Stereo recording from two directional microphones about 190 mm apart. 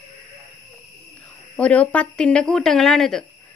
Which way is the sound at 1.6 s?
5° left (ahead or behind).